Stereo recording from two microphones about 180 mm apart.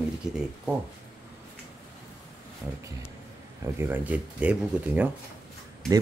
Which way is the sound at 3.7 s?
10° right (ahead or behind).